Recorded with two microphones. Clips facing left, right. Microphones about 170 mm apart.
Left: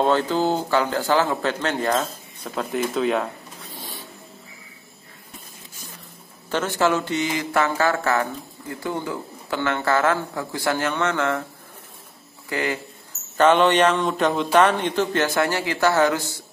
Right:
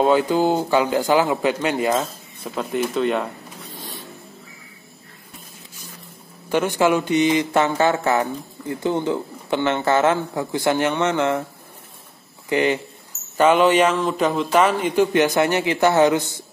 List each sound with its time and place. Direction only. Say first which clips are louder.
0.0 s a man's voice: right 3 dB; 10° right (ahead or behind)
6.5 s speech: right 3 dB; 15° right (ahead or behind)
12.4 s speech: right 6 dB; 20° right (ahead or behind)
13.4 s a man's voice: right 1 dB; 5° right (ahead or behind)